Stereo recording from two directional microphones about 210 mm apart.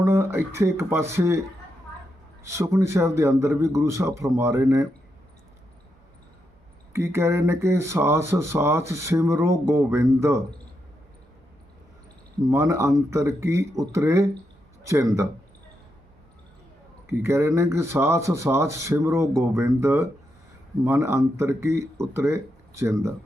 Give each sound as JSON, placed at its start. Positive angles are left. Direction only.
{"t": 0.0, "sound": "speech", "side_deg": -10}
{"t": 6.9, "sound": "speech", "side_deg": -10}
{"t": 12.5, "sound": "speech", "side_deg": -15}
{"t": 17.1, "sound": "speech", "side_deg": -10}